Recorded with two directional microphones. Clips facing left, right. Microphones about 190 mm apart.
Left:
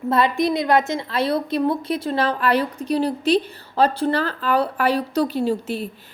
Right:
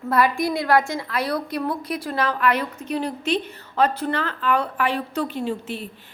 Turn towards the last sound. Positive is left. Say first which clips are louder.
# left 5 dB
turn(degrees=40)  # may be behind; listen again after turning